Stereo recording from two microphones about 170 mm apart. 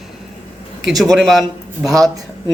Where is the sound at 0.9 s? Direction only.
Centre (ahead or behind).